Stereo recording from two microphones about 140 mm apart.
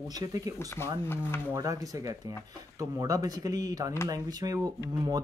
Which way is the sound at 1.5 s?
25° right (ahead or behind).